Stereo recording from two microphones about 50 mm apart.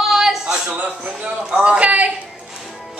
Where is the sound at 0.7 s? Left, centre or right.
Right.